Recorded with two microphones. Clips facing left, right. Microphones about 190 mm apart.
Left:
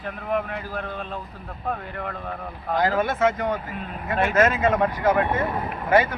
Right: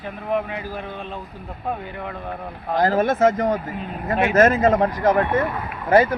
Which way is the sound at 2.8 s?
45° right (ahead or behind).